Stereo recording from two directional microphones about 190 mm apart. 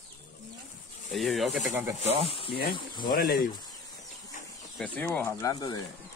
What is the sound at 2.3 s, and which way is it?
Speech, 30° left (ahead or behind).